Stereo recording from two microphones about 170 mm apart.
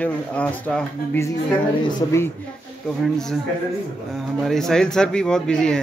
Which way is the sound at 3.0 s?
Centre (ahead or behind).